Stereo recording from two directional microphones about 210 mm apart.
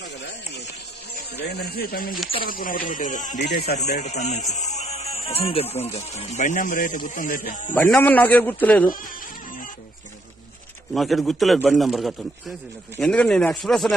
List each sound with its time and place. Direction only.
1.5 s speech: 45° left (ahead or behind)
3.3 s speech: 50° left (ahead or behind)
4.0 s speech: 35° left (ahead or behind)
7.7 s a man's voice: 10° left (ahead or behind)
10.9 s a man's voice: centre (ahead or behind)